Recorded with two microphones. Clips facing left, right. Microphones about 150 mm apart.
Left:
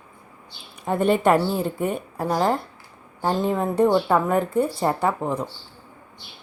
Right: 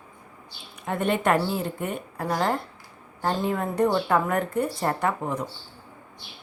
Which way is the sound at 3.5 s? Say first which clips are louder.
Left 5 dB; 25° left (ahead or behind).